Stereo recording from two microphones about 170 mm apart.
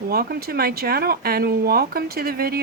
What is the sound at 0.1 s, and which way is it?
Speech, 65° right (ahead or behind).